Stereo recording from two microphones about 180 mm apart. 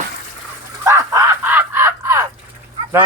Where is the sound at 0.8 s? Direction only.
15° right (ahead or behind).